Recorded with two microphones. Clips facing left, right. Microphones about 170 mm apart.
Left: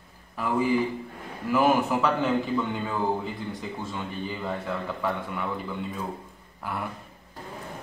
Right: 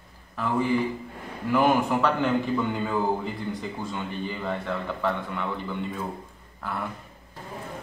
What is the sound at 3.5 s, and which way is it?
A man's voice, 5° left (ahead or behind).